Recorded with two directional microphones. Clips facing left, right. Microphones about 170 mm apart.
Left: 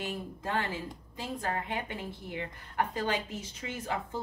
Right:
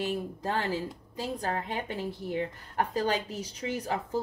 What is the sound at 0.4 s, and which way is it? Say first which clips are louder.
A woman's voice: right 1 dB; 35° right (ahead or behind).